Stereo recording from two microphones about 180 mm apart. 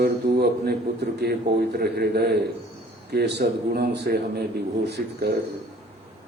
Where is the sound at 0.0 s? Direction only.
65° right (ahead or behind).